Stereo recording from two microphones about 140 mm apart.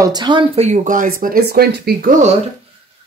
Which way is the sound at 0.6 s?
65° right (ahead or behind).